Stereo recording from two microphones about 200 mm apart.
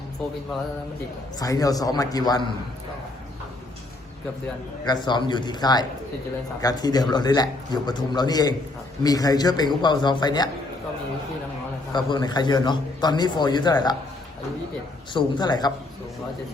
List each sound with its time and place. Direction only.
1.4 s a man's voice: 20° left (ahead or behind)
5.0 s a man's voice: 20° left (ahead or behind)
11.9 s a man's voice: 20° left (ahead or behind)
15.1 s a man's voice: 20° left (ahead or behind)